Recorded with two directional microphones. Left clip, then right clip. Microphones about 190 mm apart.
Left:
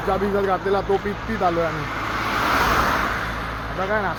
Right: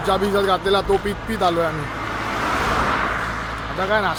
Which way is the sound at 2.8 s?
55° left (ahead or behind).